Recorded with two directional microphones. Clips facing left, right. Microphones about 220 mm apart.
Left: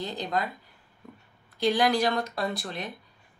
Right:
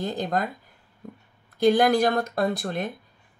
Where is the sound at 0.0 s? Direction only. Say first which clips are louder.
Right 4 dB; 50° right (ahead or behind).